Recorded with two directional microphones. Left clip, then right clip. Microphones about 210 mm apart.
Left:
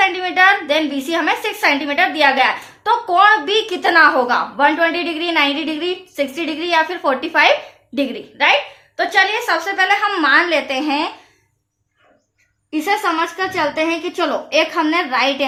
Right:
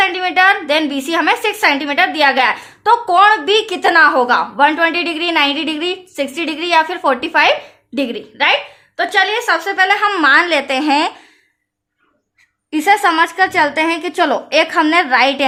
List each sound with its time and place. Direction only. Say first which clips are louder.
0.0 s a woman's voice: right 1 dB; 35° right (ahead or behind)
12.7 s a woman's voice: right 6 dB; 45° right (ahead or behind)